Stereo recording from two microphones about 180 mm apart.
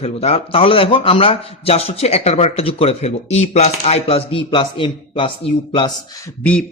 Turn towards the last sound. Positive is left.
turn(degrees=5)  # may be behind; listen again after turning